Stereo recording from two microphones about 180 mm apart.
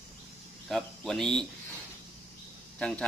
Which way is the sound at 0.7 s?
Centre (ahead or behind).